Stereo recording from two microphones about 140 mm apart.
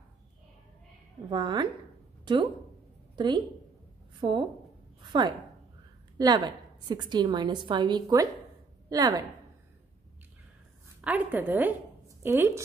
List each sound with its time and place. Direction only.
1.3 s a woman's voice: 35° right (ahead or behind)
6.1 s a woman's voice: 30° right (ahead or behind)
11.0 s a woman's voice: 10° right (ahead or behind)